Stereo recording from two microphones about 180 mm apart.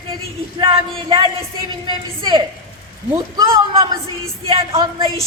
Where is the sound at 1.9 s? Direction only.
25° right (ahead or behind).